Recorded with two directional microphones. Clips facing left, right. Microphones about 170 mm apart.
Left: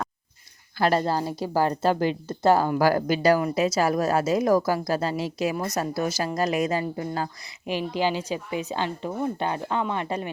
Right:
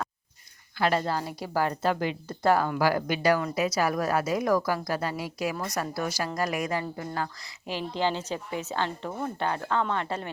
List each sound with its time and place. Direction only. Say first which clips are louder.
0.8 s a woman's voice: left 4 dB; 40° left (ahead or behind)
7.7 s speech: left 3 dB; 15° left (ahead or behind)